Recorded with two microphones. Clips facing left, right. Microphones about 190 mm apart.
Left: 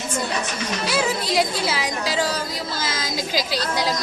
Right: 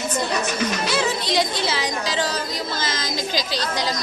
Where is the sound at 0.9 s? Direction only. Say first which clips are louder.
Left 3 dB; 5° left (ahead or behind).